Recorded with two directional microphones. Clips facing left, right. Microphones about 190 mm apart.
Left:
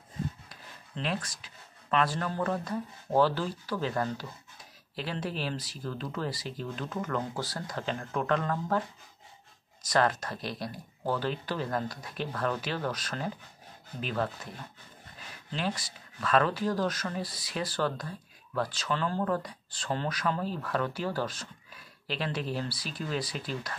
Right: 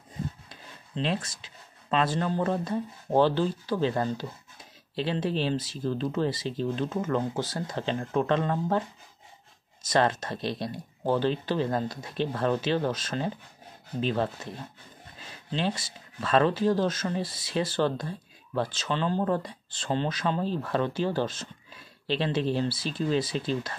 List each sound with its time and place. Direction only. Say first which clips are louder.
0.5 s speech: right 3 dB; 25° right (ahead or behind)
9.8 s speech: right 2 dB; 25° right (ahead or behind)